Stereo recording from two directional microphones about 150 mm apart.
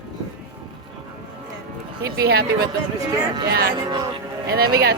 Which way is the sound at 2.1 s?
90° right.